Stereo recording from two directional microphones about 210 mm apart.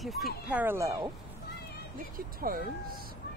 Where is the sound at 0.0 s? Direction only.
Centre (ahead or behind).